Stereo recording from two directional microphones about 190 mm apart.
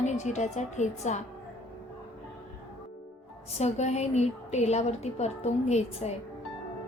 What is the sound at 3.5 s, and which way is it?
A woman's voice, 35° left (ahead or behind).